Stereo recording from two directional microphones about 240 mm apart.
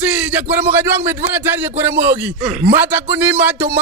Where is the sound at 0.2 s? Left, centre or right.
Centre.